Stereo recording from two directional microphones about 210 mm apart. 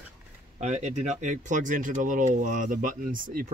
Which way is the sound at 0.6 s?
35° right (ahead or behind).